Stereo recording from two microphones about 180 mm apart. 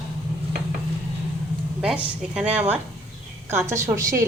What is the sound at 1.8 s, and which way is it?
A woman's voice, 5° right (ahead or behind).